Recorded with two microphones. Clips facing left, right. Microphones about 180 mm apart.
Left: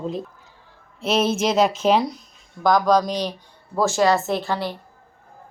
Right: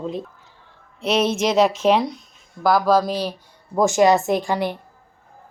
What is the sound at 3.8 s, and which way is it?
Speech, 20° right (ahead or behind).